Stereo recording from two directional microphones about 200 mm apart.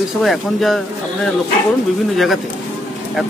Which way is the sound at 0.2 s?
Centre (ahead or behind).